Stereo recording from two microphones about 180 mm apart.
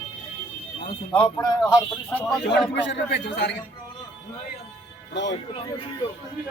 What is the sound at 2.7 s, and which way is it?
Speech, 80° left.